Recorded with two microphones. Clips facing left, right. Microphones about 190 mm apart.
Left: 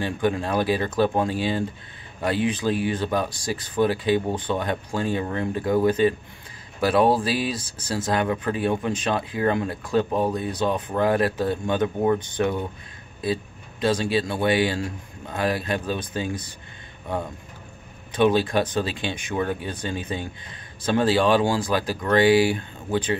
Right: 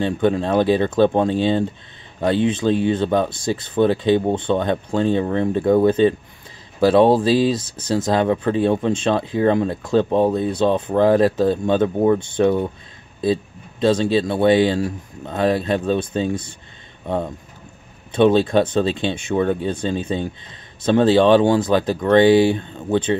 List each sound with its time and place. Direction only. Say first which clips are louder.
0.0 s speech: right 5 dB; 25° right (ahead or behind)
18.1 s speech: right 5 dB; 25° right (ahead or behind)